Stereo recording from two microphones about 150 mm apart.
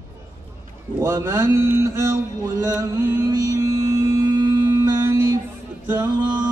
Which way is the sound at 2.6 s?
20° right (ahead or behind).